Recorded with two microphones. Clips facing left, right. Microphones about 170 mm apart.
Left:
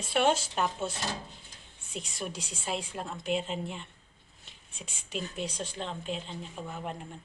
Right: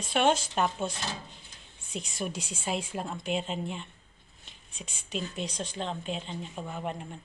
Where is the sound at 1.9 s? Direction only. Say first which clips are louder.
Right 3 dB; centre (ahead or behind).